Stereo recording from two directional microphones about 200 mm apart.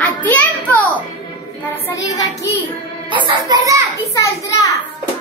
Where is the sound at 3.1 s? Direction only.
25° right (ahead or behind).